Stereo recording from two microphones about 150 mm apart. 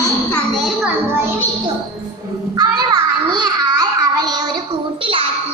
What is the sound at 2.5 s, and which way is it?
Music, 30° right (ahead or behind).